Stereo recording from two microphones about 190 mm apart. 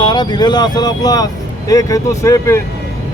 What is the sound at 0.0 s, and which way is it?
Speech, 25° left (ahead or behind).